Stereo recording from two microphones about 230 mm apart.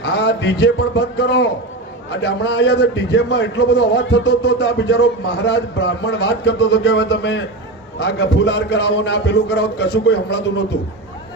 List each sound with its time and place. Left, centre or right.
0.0 s a man's voice: left